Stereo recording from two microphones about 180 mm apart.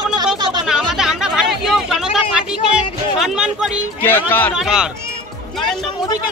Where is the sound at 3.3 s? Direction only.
5° right (ahead or behind).